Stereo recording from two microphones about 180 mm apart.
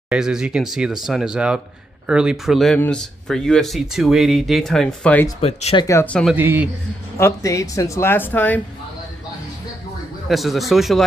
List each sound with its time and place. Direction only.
0.1 s speech: 5° right (ahead or behind)
5.4 s speech: 35° left (ahead or behind)
5.9 s speech: 10° left (ahead or behind)
6.3 s speech: 10° right (ahead or behind)
7.2 s speech: 15° left (ahead or behind)
10.2 s speech: centre (ahead or behind)